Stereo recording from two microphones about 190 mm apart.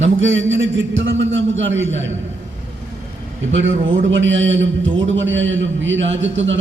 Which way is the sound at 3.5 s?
80° right.